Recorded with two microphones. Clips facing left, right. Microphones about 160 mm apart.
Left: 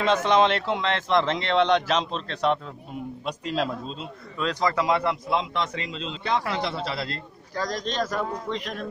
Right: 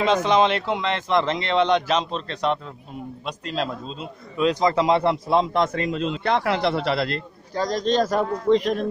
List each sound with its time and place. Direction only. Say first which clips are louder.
0.0 s speech: right 2 dB; centre (ahead or behind)
4.4 s a man's voice: right 5 dB; 15° right (ahead or behind)
5.3 s a man's voice: right 6 dB; 45° right (ahead or behind); by 7.2 s 65° right (ahead or behind)
7.5 s a man's voice: right 7 dB; 25° right (ahead or behind)